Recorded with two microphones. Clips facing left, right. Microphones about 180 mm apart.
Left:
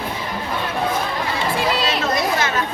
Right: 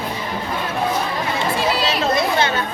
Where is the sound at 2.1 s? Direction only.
30° right (ahead or behind).